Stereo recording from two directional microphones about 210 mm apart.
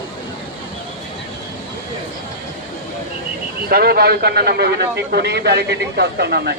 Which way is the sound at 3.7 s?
45° right (ahead or behind).